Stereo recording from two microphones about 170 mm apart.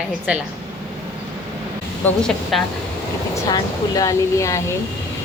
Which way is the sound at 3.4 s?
20° left (ahead or behind).